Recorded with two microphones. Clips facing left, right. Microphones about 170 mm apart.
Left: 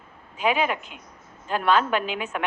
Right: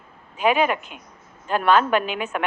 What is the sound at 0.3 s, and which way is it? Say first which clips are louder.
A woman's voice: right 4 dB; 55° right (ahead or behind).